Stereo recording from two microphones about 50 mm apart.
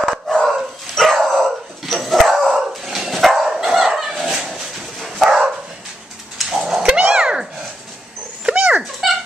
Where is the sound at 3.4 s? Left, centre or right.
Centre.